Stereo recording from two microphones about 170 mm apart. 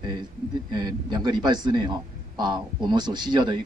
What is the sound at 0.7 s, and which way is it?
Speech, 25° right (ahead or behind).